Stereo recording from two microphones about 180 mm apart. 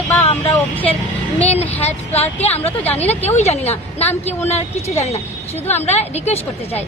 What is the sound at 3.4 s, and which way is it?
Speech, 35° left (ahead or behind).